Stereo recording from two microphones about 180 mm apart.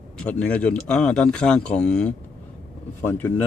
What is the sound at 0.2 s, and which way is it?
A man's voice, 5° left (ahead or behind).